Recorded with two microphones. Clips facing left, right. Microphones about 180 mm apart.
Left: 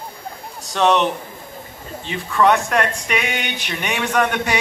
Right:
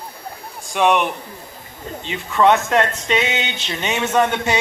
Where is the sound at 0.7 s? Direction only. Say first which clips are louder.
Even; 10° right (ahead or behind).